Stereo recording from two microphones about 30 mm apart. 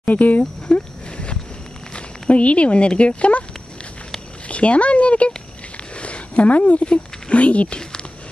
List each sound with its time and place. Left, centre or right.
0.0 s speech: left
0.4 s a sound: left
3.0 s speech: left
4.5 s speech: left
5.9 s a sound: left
6.9 s speech: left
7.6 s speech: left